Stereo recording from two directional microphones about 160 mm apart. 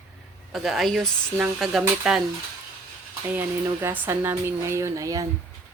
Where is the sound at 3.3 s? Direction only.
10° right (ahead or behind).